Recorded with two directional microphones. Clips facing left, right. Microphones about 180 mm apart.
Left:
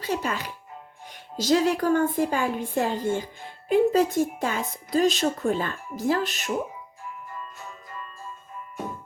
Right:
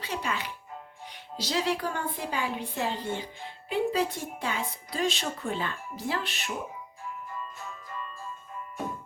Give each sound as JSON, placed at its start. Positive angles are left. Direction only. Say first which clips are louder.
{"t": 0.0, "sound": "a woman's voice", "louder": "left 5 dB", "side_deg": 45}